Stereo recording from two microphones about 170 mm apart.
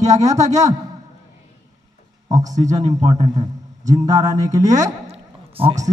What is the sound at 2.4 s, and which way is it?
A man's voice, 45° right (ahead or behind).